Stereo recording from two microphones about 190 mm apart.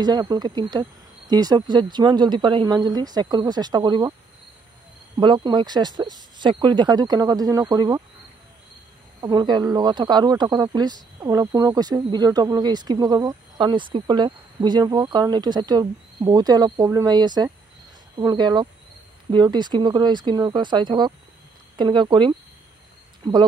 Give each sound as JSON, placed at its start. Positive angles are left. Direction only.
{"t": 0.0, "sound": "speech", "side_deg": -20}
{"t": 5.1, "sound": "speech", "side_deg": -25}
{"t": 9.2, "sound": "speech", "side_deg": -20}